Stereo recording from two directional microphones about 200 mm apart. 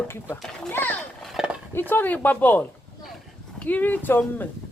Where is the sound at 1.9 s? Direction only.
10° left (ahead or behind).